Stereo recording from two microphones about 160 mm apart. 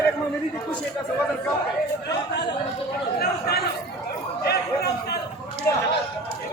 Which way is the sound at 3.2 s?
85° left.